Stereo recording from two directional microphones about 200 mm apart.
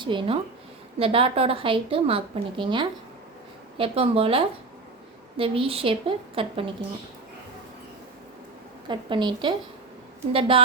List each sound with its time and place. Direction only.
0.0 s a woman's voice: 25° right (ahead or behind)
8.9 s a woman's voice: 25° right (ahead or behind)